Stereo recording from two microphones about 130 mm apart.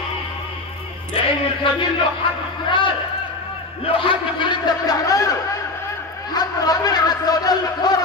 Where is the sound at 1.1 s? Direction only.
40° left (ahead or behind).